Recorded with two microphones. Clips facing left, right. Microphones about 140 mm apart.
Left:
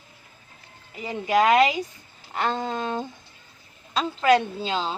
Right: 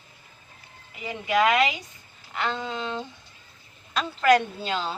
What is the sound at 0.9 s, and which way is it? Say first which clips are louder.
Speech: left 2 dB; 35° left (ahead or behind).